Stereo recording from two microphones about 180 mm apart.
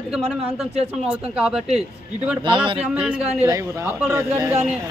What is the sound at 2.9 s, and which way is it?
A man's voice, 5° right (ahead or behind).